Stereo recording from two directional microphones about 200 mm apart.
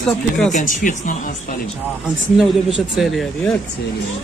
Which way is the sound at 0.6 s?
40° left (ahead or behind).